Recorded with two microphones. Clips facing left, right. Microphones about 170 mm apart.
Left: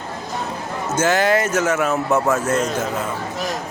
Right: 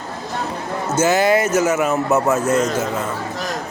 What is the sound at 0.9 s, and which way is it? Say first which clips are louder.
Speech: right 2 dB; 10° right (ahead or behind).